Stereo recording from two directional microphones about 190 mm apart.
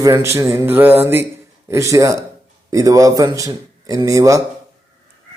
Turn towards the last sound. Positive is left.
turn(degrees=-15)  # may be behind; listen again after turning